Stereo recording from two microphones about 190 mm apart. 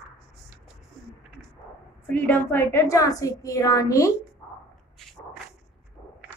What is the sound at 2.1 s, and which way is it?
A woman's voice, 10° left (ahead or behind).